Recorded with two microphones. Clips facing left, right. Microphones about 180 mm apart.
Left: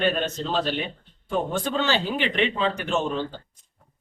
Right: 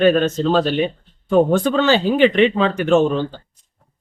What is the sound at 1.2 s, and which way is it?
A man's voice, 75° right (ahead or behind).